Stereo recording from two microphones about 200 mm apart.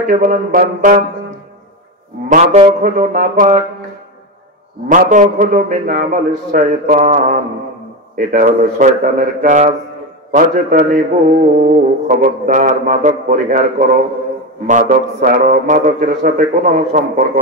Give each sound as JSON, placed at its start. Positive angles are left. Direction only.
{"t": 0.1, "sound": "music", "side_deg": -40}
{"t": 2.2, "sound": "a man's voice", "side_deg": -35}
{"t": 4.8, "sound": "music", "side_deg": -40}